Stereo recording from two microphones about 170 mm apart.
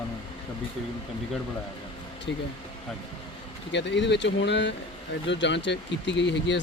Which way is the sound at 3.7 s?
90° left.